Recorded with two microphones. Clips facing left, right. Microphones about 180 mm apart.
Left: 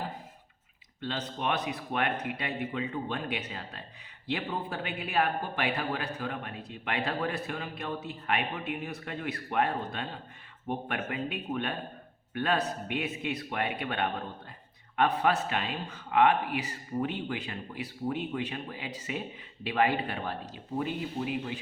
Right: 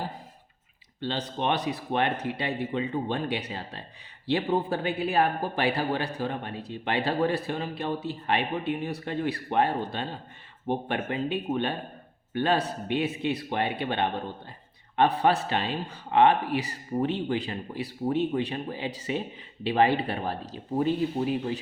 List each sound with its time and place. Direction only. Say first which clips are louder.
1.0 s a man's voice: right 4 dB; 30° right (ahead or behind)